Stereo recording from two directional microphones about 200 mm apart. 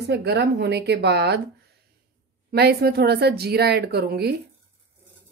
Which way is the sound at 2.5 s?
55° right (ahead or behind).